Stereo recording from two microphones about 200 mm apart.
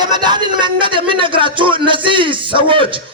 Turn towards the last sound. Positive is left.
turn(degrees=-25)  # may be behind; listen again after turning